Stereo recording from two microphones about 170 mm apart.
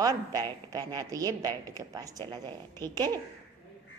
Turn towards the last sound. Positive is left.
turn(degrees=-25)  # may be behind; listen again after turning